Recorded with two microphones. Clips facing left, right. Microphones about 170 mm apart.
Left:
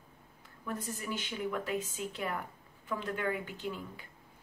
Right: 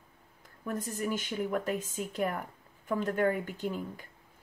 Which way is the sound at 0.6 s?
45° right (ahead or behind).